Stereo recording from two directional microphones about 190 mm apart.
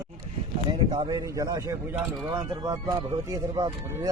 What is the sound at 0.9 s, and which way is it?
Speech, 20° right (ahead or behind).